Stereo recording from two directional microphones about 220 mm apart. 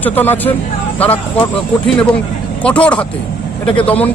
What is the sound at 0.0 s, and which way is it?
Speech, 10° left (ahead or behind).